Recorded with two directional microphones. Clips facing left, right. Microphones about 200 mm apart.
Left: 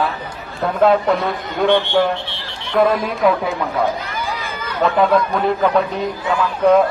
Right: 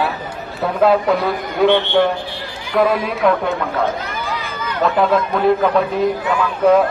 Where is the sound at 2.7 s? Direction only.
5° right (ahead or behind).